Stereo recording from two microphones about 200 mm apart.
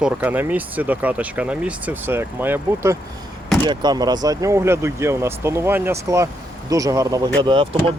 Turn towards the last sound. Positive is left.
turn(degrees=-25)  # may be behind; listen again after turning